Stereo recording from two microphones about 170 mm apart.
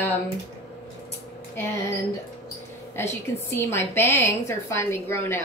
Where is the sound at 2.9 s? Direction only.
15° left (ahead or behind).